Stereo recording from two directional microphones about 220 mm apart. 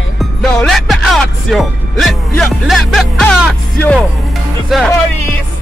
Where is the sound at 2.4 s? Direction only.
Centre (ahead or behind).